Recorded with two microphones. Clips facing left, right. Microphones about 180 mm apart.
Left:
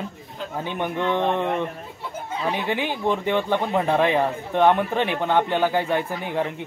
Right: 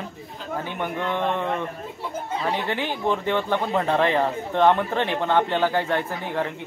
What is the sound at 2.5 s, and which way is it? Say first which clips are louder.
Speech: left 1 dB; 15° left (ahead or behind).